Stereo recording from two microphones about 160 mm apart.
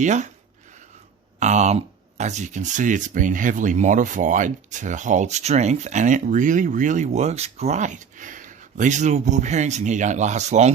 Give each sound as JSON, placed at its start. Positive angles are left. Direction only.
{"t": 0.0, "sound": "speech", "side_deg": -50}
{"t": 1.4, "sound": "speech", "side_deg": -45}